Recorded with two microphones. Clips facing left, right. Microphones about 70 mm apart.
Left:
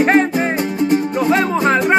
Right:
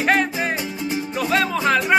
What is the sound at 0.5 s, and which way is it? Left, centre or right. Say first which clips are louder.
Music: left 9 dB; left.